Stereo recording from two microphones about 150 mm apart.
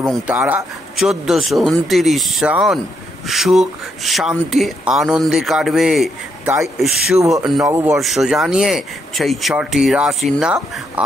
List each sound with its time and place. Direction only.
0.3 s speech: 10° right (ahead or behind)
6.4 s speech: 20° right (ahead or behind)
6.8 s speech: centre (ahead or behind)
7.6 s speech: 15° right (ahead or behind)
8.0 s speech: centre (ahead or behind)